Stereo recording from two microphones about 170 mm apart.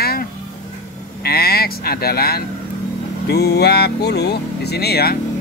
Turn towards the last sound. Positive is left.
turn(degrees=70)  # may be behind; listen again after turning